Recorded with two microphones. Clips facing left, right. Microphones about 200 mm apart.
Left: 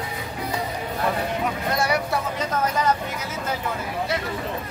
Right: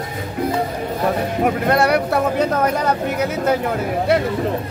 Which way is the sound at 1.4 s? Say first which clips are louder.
Right 8 dB; 60° right (ahead or behind).